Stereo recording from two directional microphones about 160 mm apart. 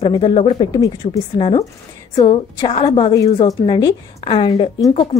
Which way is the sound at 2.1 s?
30° left (ahead or behind).